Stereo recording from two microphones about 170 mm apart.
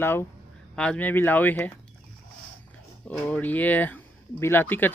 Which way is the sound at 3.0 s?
10° left (ahead or behind).